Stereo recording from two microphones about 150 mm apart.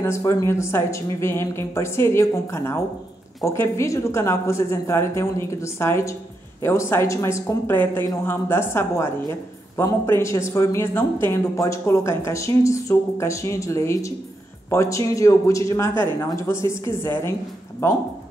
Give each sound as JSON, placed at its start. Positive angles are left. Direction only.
{"t": 0.0, "sound": "speech", "side_deg": 20}